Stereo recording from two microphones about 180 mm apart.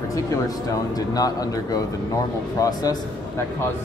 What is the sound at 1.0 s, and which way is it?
A man's voice, 20° left (ahead or behind).